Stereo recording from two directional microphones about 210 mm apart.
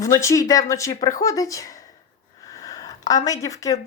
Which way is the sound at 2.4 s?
15° left (ahead or behind).